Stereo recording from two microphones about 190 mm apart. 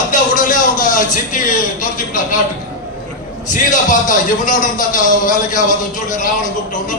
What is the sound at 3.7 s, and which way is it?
A man's voice, 45° left (ahead or behind).